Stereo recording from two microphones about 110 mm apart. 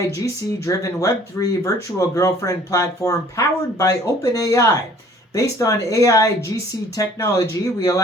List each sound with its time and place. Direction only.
0.6 s speech: 30° left (ahead or behind)